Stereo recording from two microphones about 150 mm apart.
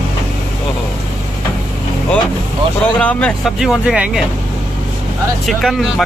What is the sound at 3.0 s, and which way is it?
Speech, 10° left (ahead or behind).